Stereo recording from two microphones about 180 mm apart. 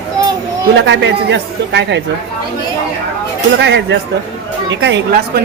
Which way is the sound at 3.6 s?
75° right (ahead or behind).